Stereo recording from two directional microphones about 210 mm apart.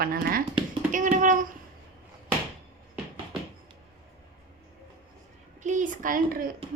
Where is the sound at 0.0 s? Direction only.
45° right (ahead or behind).